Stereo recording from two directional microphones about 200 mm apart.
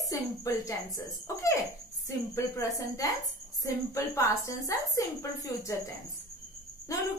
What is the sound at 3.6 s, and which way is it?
Speech, 15° left (ahead or behind).